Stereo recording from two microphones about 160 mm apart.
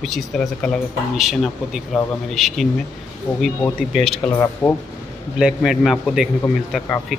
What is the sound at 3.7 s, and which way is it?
Speech, centre (ahead or behind).